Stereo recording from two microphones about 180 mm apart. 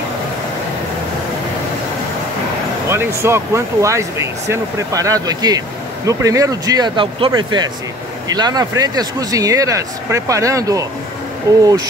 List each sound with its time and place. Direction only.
2.9 s speech: 15° right (ahead or behind)